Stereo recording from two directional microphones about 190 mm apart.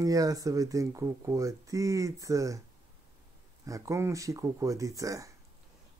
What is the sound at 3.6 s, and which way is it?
Speech, 15° right (ahead or behind).